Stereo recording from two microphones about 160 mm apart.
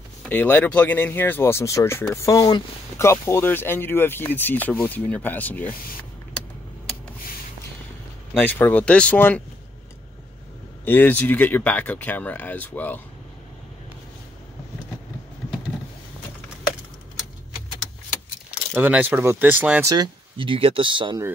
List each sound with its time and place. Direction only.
0.2 s speech: 10° left (ahead or behind)
8.4 s speech: 10° left (ahead or behind)
10.9 s speech: 10° left (ahead or behind)
18.8 s speech: 10° right (ahead or behind)
19.8 s speech: 25° right (ahead or behind)